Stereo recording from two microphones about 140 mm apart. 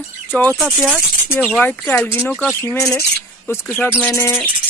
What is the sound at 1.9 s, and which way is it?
Speech, 15° left (ahead or behind).